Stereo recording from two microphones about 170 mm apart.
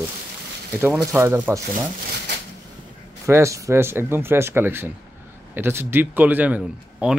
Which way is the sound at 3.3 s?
15° right (ahead or behind).